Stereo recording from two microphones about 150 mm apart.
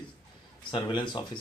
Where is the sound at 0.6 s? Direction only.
35° left (ahead or behind).